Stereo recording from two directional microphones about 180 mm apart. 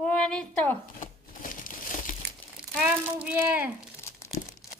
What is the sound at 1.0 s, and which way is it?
Crumpling, 45° left (ahead or behind).